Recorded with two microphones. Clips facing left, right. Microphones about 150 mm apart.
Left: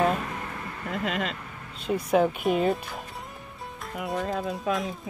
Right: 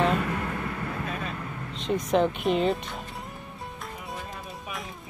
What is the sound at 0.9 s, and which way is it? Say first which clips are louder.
Vehicle: left 4 dB; 90° left.